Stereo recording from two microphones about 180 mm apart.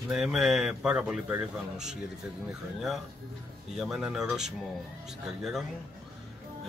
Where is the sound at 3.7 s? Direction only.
Centre (ahead or behind).